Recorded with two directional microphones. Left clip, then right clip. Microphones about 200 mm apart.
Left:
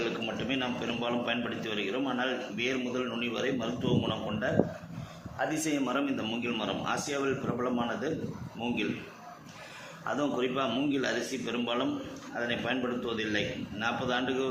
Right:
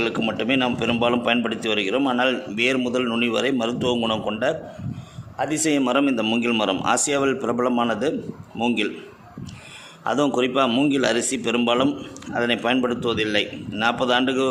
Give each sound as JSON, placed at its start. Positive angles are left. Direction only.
{"t": 0.0, "sound": "a man's voice", "side_deg": -60}
{"t": 10.0, "sound": "a man's voice", "side_deg": -55}